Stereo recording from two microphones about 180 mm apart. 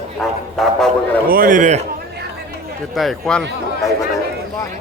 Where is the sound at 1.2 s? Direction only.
55° right (ahead or behind).